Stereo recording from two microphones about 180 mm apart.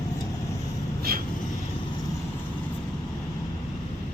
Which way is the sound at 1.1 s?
55° right (ahead or behind).